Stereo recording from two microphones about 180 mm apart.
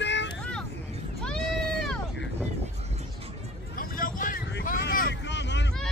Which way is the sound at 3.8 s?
50° left (ahead or behind).